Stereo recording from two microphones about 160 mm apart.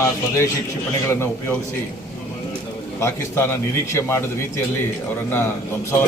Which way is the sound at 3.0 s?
15° left (ahead or behind).